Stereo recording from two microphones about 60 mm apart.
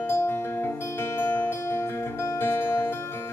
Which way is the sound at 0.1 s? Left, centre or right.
Left.